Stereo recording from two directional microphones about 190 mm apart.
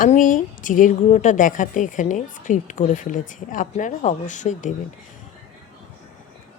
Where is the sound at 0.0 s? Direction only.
45° left (ahead or behind).